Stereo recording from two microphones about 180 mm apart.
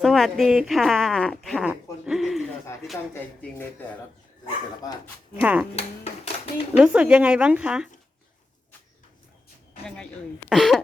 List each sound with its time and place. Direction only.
0.0 s speech: centre (ahead or behind)
5.4 s speech: 5° right (ahead or behind)
5.7 s hands: 35° left (ahead or behind)
6.7 s speech: 5° right (ahead or behind)
9.8 s speech: 5° left (ahead or behind)